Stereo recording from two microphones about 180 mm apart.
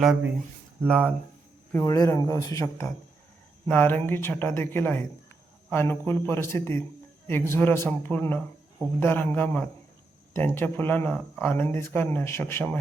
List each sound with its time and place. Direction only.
0.0 s speech: 5° right (ahead or behind)
1.7 s speech: 15° left (ahead or behind)